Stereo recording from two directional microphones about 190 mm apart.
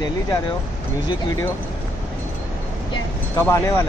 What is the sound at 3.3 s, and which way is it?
Speech, 15° left (ahead or behind).